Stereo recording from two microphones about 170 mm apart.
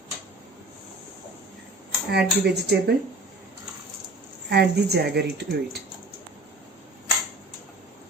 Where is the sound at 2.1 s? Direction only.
75° right (ahead or behind).